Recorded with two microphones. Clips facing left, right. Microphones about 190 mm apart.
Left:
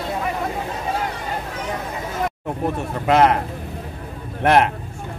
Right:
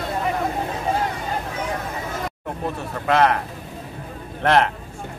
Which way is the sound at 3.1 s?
20° left (ahead or behind).